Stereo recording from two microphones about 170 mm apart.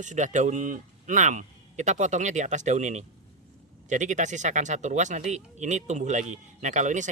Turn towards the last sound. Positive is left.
turn(degrees=-45)  # may be behind; listen again after turning